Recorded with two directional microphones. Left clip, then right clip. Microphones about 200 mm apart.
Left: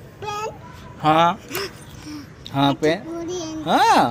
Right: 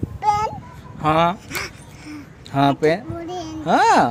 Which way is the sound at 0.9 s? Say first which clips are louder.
Left 1 dB; 20° right (ahead or behind).